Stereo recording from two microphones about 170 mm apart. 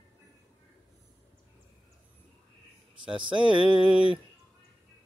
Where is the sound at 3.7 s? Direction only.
30° left (ahead or behind).